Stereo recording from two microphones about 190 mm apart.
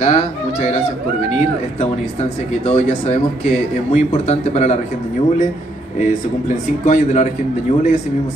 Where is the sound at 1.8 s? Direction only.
35° left (ahead or behind).